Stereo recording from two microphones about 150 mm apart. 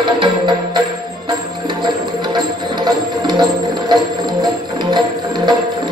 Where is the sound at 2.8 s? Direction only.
30° right (ahead or behind).